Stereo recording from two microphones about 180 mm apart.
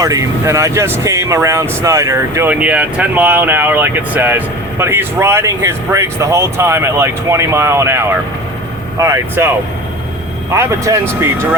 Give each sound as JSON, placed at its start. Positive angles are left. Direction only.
{"t": 0.0, "sound": "speech", "side_deg": -20}
{"t": 10.5, "sound": "speech", "side_deg": -15}